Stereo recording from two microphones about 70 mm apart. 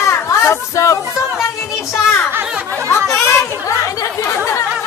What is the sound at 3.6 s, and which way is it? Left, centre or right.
Chatter, left.